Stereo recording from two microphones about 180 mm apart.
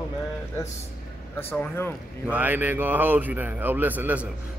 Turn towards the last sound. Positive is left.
turn(degrees=-10)  # may be behind; listen again after turning